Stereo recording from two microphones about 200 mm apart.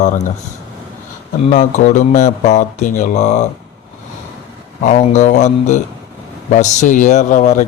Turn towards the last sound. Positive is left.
turn(degrees=40)  # may be behind; listen again after turning